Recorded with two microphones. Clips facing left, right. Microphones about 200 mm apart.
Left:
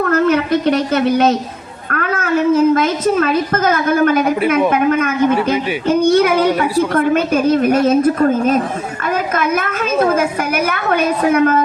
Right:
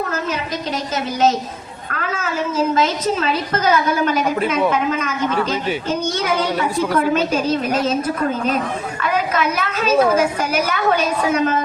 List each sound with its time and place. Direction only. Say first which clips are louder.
0.1 s a woman's voice: left 11 dB; 60° left (ahead or behind)